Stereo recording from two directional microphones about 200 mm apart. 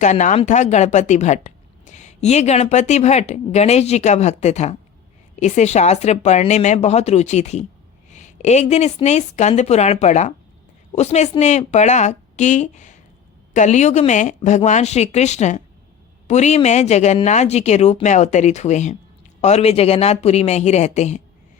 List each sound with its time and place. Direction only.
0.0 s speech: 35° left (ahead or behind)